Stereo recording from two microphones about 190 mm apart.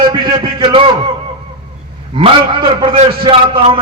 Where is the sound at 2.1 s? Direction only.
25° right (ahead or behind).